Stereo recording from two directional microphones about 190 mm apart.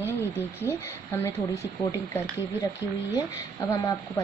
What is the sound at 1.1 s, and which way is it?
A woman's voice, 15° left (ahead or behind).